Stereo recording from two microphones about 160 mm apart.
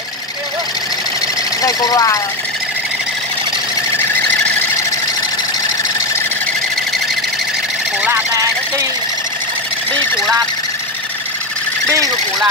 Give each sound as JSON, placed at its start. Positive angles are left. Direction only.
{"t": 1.6, "sound": "speech", "side_deg": 25}
{"t": 8.0, "sound": "vehicle", "side_deg": -15}